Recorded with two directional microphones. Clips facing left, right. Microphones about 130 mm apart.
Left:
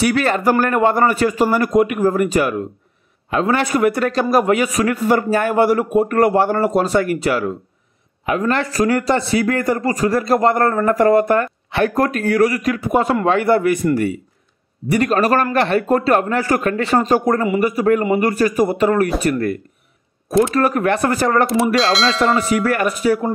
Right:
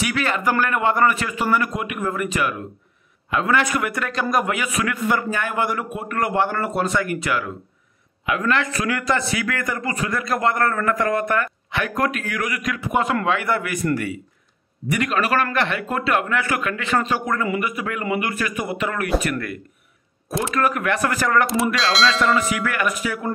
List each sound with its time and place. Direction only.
0.0 s a man's voice: 40° left (ahead or behind)
14.9 s a man's voice: 35° left (ahead or behind)
21.7 s speech: centre (ahead or behind)
22.2 s a man's voice: 30° left (ahead or behind)